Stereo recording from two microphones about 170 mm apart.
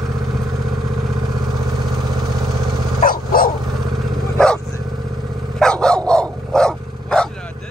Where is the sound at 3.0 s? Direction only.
60° left (ahead or behind).